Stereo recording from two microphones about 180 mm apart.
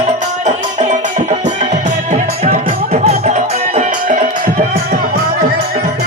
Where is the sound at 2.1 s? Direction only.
40° right (ahead or behind).